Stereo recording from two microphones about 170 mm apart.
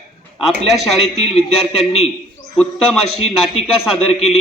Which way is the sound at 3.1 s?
35° left (ahead or behind).